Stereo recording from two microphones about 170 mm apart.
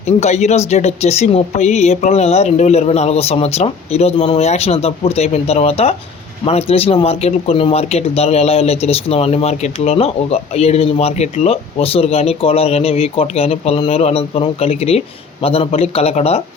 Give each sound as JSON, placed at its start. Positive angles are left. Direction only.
{"t": 0.2, "sound": "speech", "side_deg": 40}